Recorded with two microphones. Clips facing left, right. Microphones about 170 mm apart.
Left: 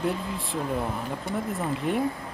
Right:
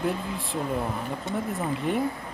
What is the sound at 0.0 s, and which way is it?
Speech, centre (ahead or behind).